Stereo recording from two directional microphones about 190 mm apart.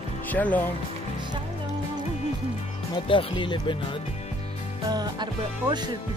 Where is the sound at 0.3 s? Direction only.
10° left (ahead or behind).